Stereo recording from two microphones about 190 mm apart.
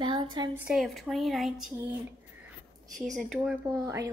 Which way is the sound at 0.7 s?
Centre (ahead or behind).